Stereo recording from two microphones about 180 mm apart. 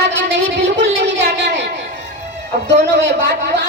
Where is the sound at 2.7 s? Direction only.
75° right (ahead or behind).